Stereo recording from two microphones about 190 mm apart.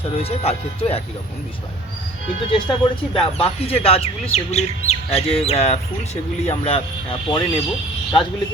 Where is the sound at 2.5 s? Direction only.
25° left (ahead or behind).